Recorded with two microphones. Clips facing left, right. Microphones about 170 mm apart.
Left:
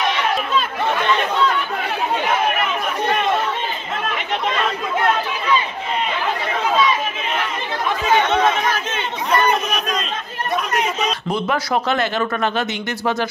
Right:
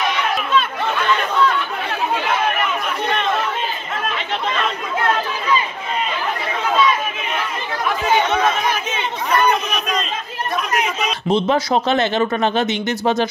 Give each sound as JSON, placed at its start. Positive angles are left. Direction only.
{"t": 9.4, "sound": "chatter", "side_deg": -5}
{"t": 11.2, "sound": "speech", "side_deg": -25}